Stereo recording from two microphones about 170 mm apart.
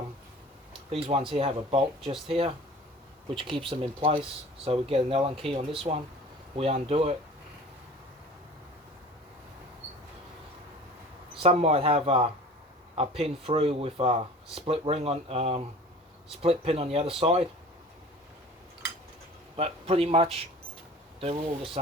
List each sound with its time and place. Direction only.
0.7 s a sound: 35° right (ahead or behind)
1.3 s speech: 35° right (ahead or behind)
11.3 s speech: 35° right (ahead or behind)
19.5 s speech: 35° right (ahead or behind)